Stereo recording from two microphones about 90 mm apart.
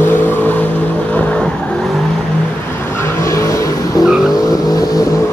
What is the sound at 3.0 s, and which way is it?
Vehicle, 35° left (ahead or behind).